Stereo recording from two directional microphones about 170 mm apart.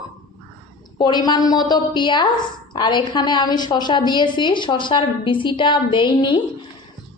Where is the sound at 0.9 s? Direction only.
25° left (ahead or behind).